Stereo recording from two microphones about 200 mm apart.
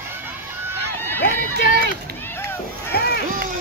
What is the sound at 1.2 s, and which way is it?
Run, 50° left (ahead or behind).